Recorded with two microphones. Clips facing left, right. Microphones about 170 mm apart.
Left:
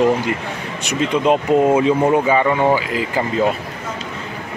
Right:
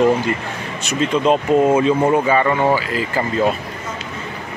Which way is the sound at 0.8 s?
15° left (ahead or behind).